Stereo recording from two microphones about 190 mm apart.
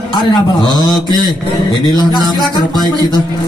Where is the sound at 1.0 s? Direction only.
20° right (ahead or behind).